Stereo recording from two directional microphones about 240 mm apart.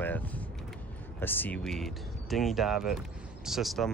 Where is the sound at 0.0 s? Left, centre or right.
Centre.